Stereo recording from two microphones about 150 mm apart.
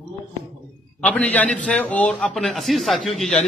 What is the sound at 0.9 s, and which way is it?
A man's voice, 10° left (ahead or behind).